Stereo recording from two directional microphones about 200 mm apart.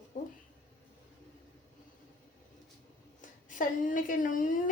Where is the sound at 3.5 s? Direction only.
40° left (ahead or behind).